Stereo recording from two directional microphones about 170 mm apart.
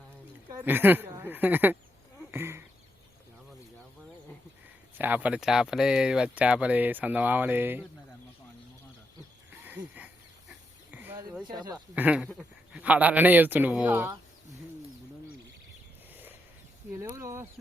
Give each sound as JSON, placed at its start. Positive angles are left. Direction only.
{"t": 0.5, "sound": "speech", "side_deg": -10}
{"t": 2.3, "sound": "a sound", "side_deg": -15}
{"t": 4.9, "sound": "speech", "side_deg": -10}
{"t": 9.6, "sound": "a sound", "side_deg": -10}
{"t": 11.4, "sound": "speech", "side_deg": -25}
{"t": 11.9, "sound": "speech", "side_deg": -10}
{"t": 17.0, "sound": "speech", "side_deg": -15}